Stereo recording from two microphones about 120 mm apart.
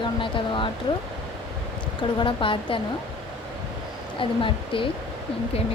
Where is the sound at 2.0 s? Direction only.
45° left (ahead or behind).